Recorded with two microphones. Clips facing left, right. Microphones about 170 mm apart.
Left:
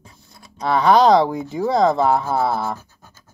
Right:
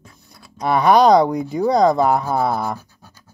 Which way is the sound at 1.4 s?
15° right (ahead or behind).